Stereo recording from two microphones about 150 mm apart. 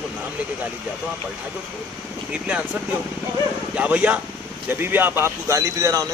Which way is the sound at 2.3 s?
5° right (ahead or behind).